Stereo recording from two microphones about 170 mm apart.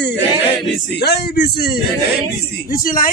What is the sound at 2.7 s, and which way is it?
Speech, 55° left (ahead or behind).